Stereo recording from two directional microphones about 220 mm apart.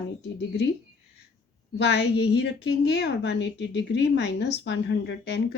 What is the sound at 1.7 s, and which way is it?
A woman's voice, 50° left (ahead or behind).